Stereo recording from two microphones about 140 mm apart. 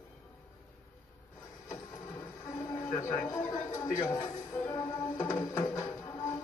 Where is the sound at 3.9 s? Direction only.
25° left (ahead or behind).